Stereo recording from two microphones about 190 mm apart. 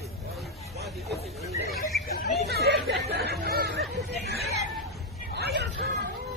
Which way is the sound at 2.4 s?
60° right (ahead or behind).